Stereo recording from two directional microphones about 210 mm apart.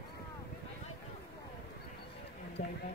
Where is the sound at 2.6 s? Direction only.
45° left (ahead or behind).